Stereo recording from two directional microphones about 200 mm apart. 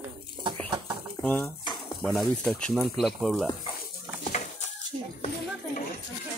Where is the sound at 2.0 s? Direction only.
5° left (ahead or behind).